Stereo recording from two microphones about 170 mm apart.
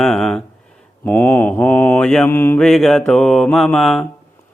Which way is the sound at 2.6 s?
Centre (ahead or behind).